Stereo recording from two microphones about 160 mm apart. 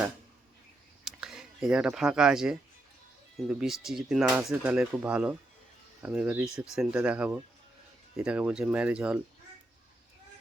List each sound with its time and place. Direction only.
1.0 s speech: 5° right (ahead or behind)